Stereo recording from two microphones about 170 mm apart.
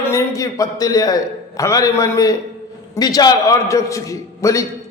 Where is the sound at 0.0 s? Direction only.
15° left (ahead or behind).